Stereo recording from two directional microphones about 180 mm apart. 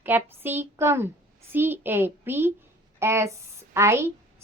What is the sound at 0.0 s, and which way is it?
A woman's voice, 10° right (ahead or behind).